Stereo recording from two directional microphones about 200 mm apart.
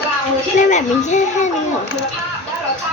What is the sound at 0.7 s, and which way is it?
Speech, 35° left (ahead or behind).